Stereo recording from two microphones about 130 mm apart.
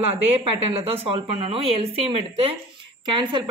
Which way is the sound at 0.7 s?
45° right (ahead or behind).